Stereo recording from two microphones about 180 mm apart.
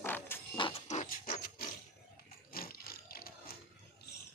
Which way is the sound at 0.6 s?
30° left (ahead or behind).